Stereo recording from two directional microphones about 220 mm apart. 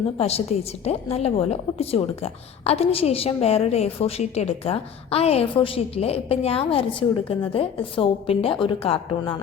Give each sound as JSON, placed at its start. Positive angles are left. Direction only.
{"t": 0.2, "sound": "a woman's voice", "side_deg": 30}